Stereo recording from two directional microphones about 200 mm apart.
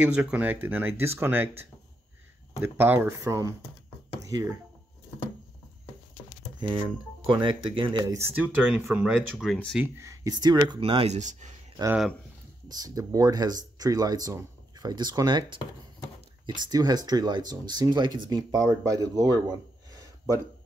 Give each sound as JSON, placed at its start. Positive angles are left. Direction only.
{"t": 0.0, "sound": "speech", "side_deg": -5}
{"t": 2.6, "sound": "speech", "side_deg": -10}
{"t": 7.2, "sound": "speech", "side_deg": -25}
{"t": 9.8, "sound": "speech", "side_deg": -15}
{"t": 12.6, "sound": "speech", "side_deg": -20}